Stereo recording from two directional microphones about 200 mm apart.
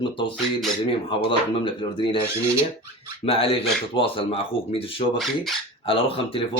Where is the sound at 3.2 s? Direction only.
30° left (ahead or behind).